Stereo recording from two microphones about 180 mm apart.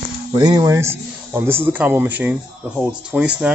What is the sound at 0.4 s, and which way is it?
Speech, 20° right (ahead or behind).